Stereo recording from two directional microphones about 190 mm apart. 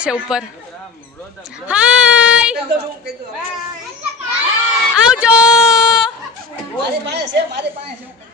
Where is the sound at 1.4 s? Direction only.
5° right (ahead or behind).